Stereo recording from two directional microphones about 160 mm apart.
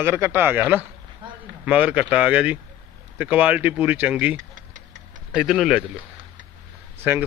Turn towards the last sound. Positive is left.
turn(degrees=-10)  # may be behind; listen again after turning